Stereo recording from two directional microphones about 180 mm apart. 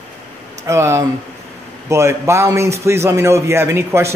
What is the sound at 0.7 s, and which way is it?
Speech, 15° right (ahead or behind).